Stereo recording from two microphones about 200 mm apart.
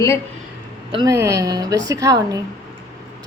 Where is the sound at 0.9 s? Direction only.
20° right (ahead or behind).